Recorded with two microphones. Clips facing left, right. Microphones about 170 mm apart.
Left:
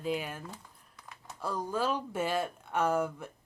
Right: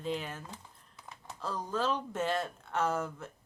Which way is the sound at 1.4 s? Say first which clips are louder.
Left 2 dB; 10° left (ahead or behind).